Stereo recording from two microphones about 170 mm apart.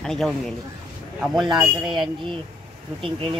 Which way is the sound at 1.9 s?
30° right (ahead or behind).